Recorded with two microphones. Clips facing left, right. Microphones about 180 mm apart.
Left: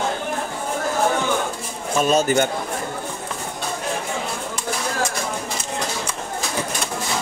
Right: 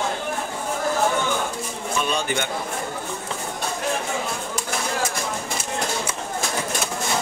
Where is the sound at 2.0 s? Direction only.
40° left (ahead or behind).